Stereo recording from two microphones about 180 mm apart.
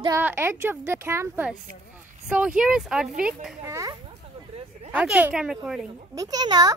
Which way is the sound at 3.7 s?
15° right (ahead or behind).